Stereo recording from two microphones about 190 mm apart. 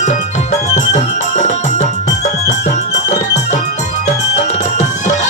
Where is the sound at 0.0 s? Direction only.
40° left (ahead or behind).